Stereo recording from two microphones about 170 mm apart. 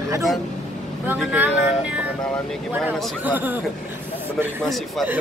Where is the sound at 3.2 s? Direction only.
10° right (ahead or behind).